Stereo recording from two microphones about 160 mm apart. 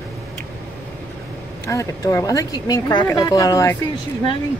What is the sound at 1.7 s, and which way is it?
Speech, 20° left (ahead or behind).